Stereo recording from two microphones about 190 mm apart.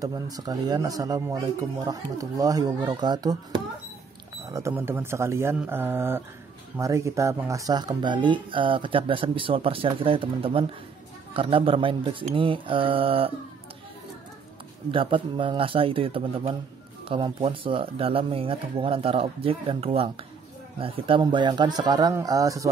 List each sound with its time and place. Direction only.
0.0 s speech: 20° right (ahead or behind)
14.9 s speech: 25° right (ahead or behind)